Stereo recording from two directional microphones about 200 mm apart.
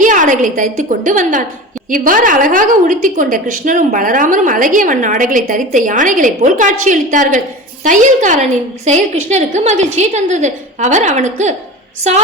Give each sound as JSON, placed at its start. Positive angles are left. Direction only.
{"t": 0.0, "sound": "a woman's voice", "side_deg": -40}